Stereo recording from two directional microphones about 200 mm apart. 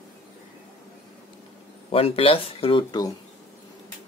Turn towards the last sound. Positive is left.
turn(degrees=20)  # may be behind; listen again after turning